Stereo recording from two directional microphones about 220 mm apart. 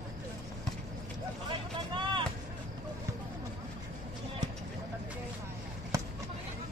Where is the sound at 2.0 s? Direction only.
20° right (ahead or behind).